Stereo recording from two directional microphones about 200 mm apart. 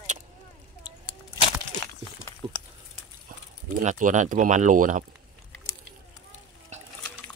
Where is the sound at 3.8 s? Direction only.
40° right (ahead or behind).